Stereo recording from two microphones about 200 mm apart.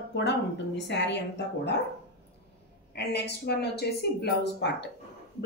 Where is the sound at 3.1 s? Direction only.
55° left (ahead or behind).